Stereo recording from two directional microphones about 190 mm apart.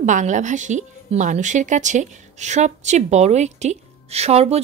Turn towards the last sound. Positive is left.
turn(degrees=-35)  # may be behind; listen again after turning